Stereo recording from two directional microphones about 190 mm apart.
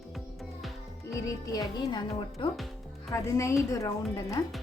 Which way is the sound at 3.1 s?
15° left (ahead or behind).